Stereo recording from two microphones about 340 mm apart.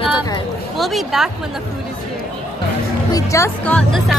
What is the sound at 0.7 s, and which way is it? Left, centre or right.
Speech, centre.